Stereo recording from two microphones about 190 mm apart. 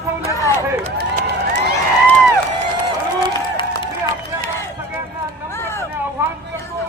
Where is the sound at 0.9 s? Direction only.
55° right (ahead or behind).